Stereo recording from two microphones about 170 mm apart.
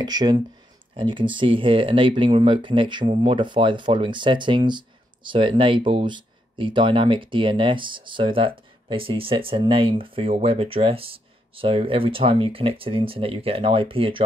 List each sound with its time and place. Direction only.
0.0 s speech: 25° right (ahead or behind)